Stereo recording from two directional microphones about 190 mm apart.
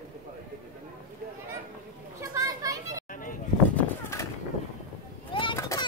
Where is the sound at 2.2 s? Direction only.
15° right (ahead or behind).